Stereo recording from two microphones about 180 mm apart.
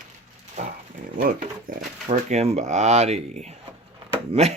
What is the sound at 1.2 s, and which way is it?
Speech, 55° right (ahead or behind).